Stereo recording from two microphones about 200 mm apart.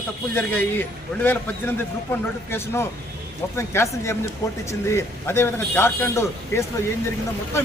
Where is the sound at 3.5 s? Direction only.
15° left (ahead or behind).